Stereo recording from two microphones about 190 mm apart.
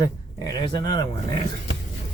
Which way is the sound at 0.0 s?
20° left (ahead or behind).